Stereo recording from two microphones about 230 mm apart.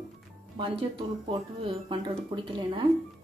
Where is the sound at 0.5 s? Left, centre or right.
Right.